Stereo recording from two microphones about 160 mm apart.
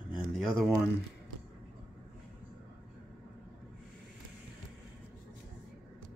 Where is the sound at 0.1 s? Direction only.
Centre (ahead or behind).